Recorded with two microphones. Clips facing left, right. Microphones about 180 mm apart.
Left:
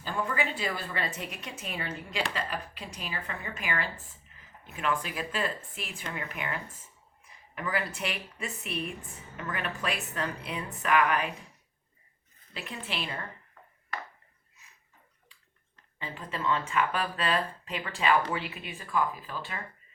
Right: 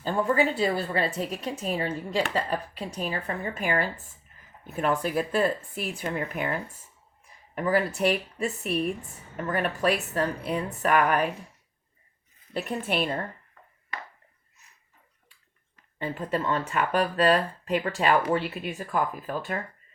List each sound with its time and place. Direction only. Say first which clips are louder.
0.0 s speech: right 8 dB; 35° right (ahead or behind)
12.5 s speech: right 10 dB; 45° right (ahead or behind)
16.0 s speech: right 8 dB; 50° right (ahead or behind)